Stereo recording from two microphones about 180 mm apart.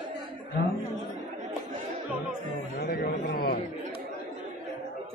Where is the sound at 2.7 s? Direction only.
55° left (ahead or behind).